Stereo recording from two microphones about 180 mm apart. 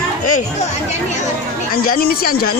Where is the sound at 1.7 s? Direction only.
55° left (ahead or behind).